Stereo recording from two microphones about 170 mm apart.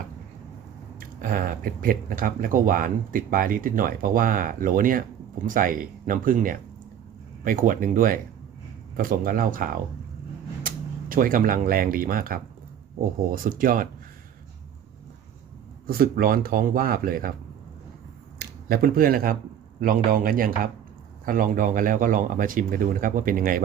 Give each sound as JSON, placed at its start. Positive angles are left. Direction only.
{"t": 0.9, "sound": "speech", "side_deg": -55}
{"t": 11.1, "sound": "speech", "side_deg": -55}
{"t": 15.9, "sound": "speech", "side_deg": -60}
{"t": 18.3, "sound": "speech", "side_deg": -60}